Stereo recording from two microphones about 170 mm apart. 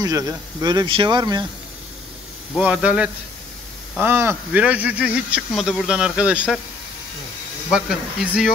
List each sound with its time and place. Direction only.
0.0 s speech: 20° right (ahead or behind)
2.5 s speech: 5° right (ahead or behind)
7.7 s speech: 5° right (ahead or behind)